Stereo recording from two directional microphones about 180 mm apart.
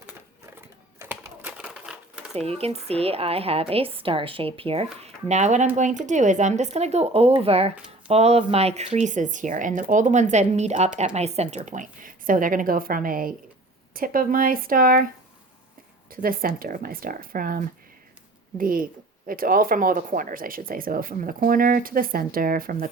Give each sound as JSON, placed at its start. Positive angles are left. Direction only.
{"t": 1.0, "sound": "typewriter", "side_deg": -10}
{"t": 2.3, "sound": "a woman's voice", "side_deg": -35}
{"t": 16.0, "sound": "speech", "side_deg": -55}